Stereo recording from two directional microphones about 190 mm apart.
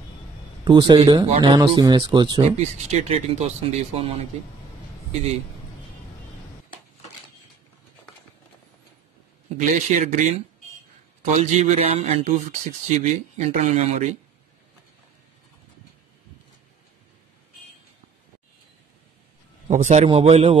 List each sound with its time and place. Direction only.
0.7 s speech: 25° right (ahead or behind)
2.5 s a man's voice: 35° right (ahead or behind)
9.6 s a man's voice: 40° right (ahead or behind)
19.7 s a man's voice: 35° right (ahead or behind)